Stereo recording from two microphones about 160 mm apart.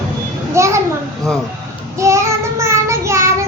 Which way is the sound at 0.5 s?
20° right (ahead or behind).